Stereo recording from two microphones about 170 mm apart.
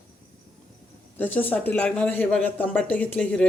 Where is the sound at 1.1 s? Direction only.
10° left (ahead or behind).